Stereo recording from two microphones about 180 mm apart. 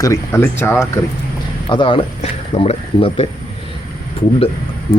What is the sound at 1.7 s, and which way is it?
Speech, 30° left (ahead or behind).